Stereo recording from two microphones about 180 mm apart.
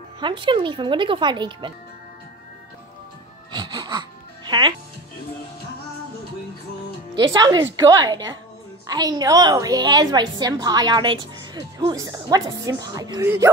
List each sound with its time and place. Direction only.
0.2 s a woman's voice: 30° right (ahead or behind)
3.5 s music: 25° right (ahead or behind)
4.5 s speech: 25° right (ahead or behind)
7.3 s a woman's voice: 20° right (ahead or behind)